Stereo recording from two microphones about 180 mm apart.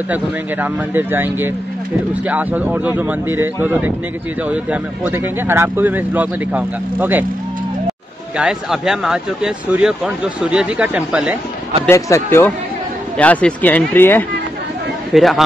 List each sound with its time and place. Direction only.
0.1 s speech: 10° right (ahead or behind)
8.4 s speech: 5° right (ahead or behind)
11.8 s speech: 15° left (ahead or behind)
15.1 s speech: centre (ahead or behind)